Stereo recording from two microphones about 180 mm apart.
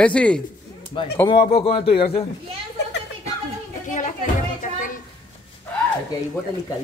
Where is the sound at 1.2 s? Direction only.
30° left (ahead or behind).